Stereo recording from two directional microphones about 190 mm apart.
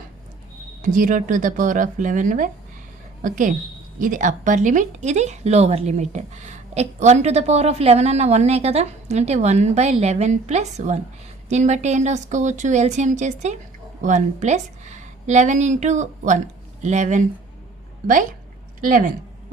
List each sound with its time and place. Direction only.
0.8 s a woman's voice: 45° right (ahead or behind)